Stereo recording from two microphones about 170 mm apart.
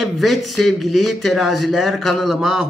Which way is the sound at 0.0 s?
Centre (ahead or behind).